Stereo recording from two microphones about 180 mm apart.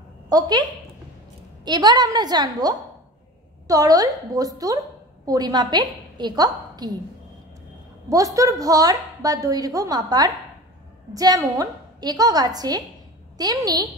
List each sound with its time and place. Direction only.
0.3 s a woman's voice: 20° right (ahead or behind)
8.1 s a woman's voice: 20° right (ahead or behind)